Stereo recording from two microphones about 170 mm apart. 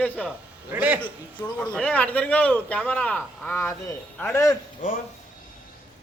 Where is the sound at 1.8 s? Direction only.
5° left (ahead or behind).